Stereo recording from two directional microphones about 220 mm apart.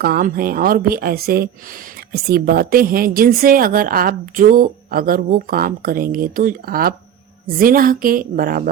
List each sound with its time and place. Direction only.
0.0 s a woman's voice: 40° right (ahead or behind)